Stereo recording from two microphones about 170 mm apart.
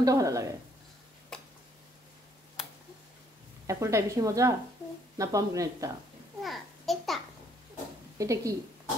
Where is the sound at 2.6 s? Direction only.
Centre (ahead or behind).